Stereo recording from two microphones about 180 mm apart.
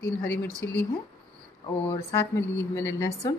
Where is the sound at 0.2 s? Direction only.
10° left (ahead or behind).